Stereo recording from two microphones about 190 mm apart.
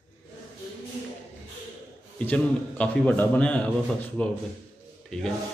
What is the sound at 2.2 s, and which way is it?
A man's voice, 10° left (ahead or behind).